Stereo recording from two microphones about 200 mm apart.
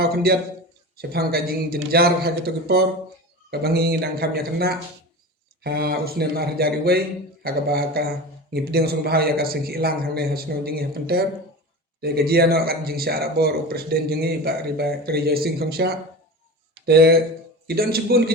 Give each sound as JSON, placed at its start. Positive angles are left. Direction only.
{"t": 0.0, "sound": "a man's voice", "side_deg": -50}